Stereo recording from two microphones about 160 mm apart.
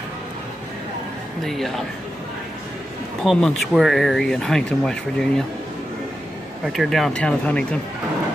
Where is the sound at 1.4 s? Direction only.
Centre (ahead or behind).